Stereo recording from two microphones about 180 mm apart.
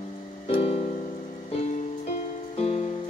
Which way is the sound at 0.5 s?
35° left (ahead or behind).